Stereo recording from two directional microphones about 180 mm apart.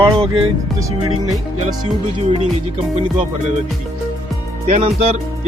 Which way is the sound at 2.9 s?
35° right (ahead or behind).